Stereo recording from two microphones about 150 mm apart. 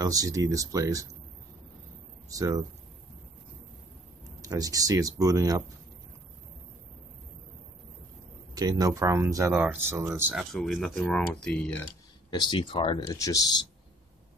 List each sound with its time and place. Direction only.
0.0 s speech: 25° right (ahead or behind)
2.2 s speech: 25° right (ahead or behind)
4.4 s speech: 25° right (ahead or behind)
8.5 s speech: 25° right (ahead or behind)
10.3 s speech: centre (ahead or behind)
12.3 s speech: 30° left (ahead or behind)